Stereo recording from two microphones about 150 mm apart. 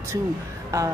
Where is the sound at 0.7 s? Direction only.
20° right (ahead or behind).